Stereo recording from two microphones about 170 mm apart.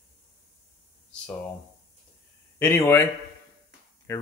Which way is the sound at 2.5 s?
15° left (ahead or behind).